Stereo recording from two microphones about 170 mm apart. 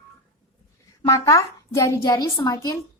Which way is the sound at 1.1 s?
20° left (ahead or behind).